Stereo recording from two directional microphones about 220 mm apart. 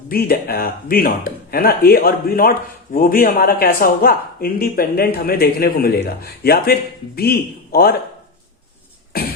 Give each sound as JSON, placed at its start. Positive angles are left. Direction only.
{"t": 0.1, "sound": "a man's voice", "side_deg": 40}
{"t": 9.1, "sound": "beatboxing", "side_deg": 45}